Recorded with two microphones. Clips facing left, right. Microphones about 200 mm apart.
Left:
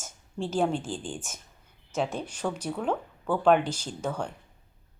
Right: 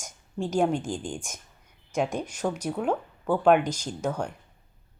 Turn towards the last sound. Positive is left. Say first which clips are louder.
# right 2 dB
turn(degrees=-10)  # may be behind; listen again after turning